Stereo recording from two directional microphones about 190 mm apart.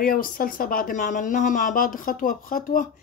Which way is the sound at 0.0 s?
50° left (ahead or behind).